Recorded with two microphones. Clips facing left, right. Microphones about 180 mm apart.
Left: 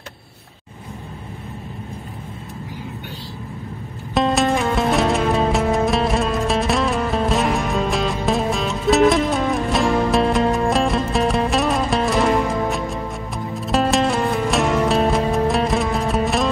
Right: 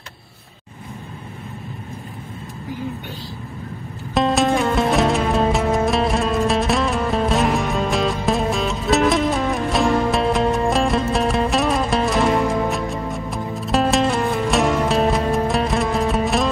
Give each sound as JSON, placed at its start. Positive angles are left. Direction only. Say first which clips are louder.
{"t": 4.1, "sound": "music", "louder": "even", "side_deg": 0}